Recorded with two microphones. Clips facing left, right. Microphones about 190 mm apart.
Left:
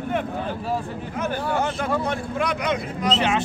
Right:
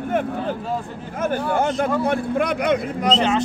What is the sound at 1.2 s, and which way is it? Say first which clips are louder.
Speech: right 4 dB; 50° right (ahead or behind).